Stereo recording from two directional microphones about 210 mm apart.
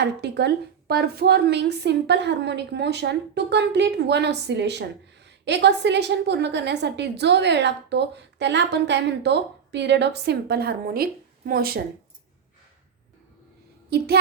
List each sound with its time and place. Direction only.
0.0 s a woman's voice: 50° right (ahead or behind)